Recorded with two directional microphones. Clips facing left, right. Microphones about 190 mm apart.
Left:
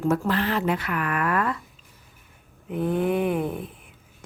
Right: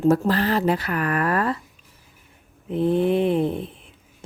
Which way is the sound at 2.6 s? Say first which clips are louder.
Right 4 dB; 25° right (ahead or behind).